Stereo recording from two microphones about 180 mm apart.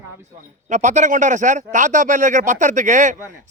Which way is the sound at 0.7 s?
45° right (ahead or behind).